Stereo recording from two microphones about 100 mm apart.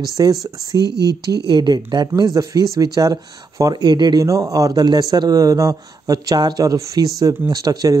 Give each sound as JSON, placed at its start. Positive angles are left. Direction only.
{"t": 0.2, "sound": "speech", "side_deg": -35}